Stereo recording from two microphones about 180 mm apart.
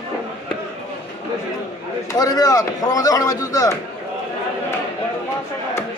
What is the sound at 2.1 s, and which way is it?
A man's voice, 20° left (ahead or behind).